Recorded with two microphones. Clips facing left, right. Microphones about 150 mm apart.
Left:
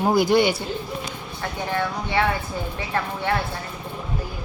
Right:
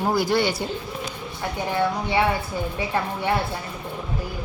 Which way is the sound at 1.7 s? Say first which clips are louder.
Right 3 dB; 15° right (ahead or behind).